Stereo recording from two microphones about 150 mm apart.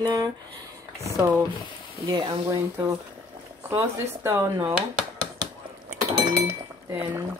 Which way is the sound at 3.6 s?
15° right (ahead or behind).